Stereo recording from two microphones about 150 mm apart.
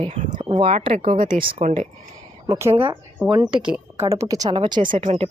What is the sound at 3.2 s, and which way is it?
A woman's voice, 10° right (ahead or behind).